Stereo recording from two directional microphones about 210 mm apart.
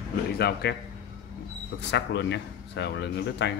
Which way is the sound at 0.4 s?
50° left (ahead or behind).